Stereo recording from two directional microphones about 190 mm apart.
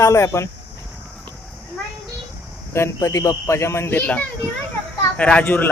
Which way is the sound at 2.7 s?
15° left (ahead or behind).